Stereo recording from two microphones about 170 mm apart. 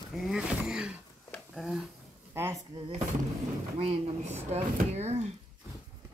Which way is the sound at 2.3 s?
15° right (ahead or behind).